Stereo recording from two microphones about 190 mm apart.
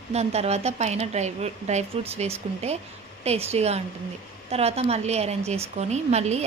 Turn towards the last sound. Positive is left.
turn(degrees=-35)  # may be behind; listen again after turning